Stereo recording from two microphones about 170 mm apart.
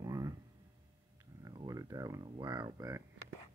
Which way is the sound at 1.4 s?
20° right (ahead or behind).